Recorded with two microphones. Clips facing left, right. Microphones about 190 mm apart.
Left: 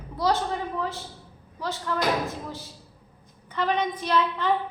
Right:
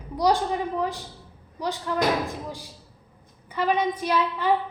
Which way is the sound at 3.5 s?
10° right (ahead or behind).